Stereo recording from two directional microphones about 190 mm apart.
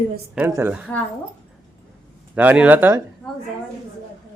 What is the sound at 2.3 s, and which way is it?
Speech, 5° right (ahead or behind).